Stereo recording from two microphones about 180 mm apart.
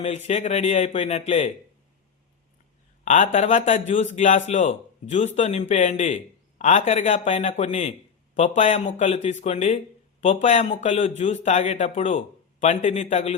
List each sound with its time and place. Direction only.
0.0 s a man's voice: 35° left (ahead or behind)
3.0 s a man's voice: 45° left (ahead or behind)